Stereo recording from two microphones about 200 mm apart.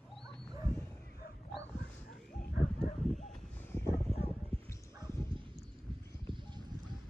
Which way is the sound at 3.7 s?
15° left (ahead or behind).